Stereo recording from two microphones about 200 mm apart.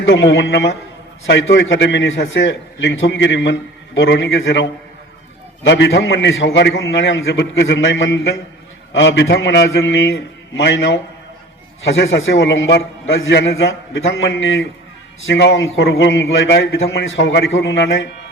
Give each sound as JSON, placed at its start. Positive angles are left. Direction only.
{"t": 0.0, "sound": "a man's voice", "side_deg": 65}